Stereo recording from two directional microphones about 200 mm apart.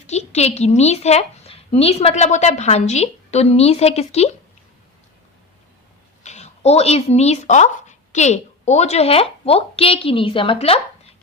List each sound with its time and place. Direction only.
0.1 s a woman's voice: 35° left (ahead or behind)
6.2 s speech: 35° left (ahead or behind)